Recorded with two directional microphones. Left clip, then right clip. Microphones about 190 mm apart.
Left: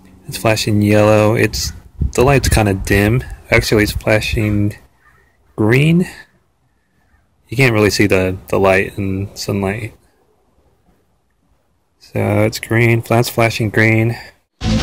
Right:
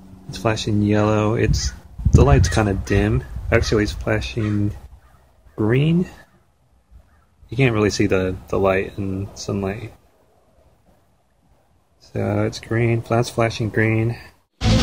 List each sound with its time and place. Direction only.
0.3 s speech: 25° left (ahead or behind)
7.4 s speech: 25° left (ahead or behind)
12.0 s speech: 25° left (ahead or behind)